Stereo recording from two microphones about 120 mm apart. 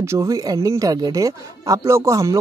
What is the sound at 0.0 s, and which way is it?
Speech, 25° right (ahead or behind).